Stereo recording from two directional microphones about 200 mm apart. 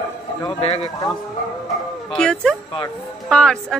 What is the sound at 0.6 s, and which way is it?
Speech, 30° left (ahead or behind).